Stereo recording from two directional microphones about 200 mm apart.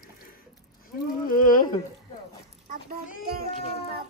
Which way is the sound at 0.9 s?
45° left (ahead or behind).